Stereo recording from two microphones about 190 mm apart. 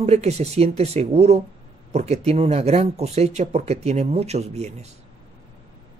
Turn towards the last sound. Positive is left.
turn(degrees=-35)  # may be behind; listen again after turning